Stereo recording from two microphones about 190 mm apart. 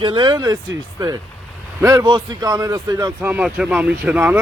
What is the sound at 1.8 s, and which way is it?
Speech, 20° right (ahead or behind).